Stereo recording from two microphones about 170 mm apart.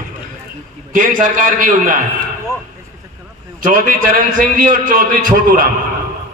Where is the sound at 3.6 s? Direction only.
55° right (ahead or behind).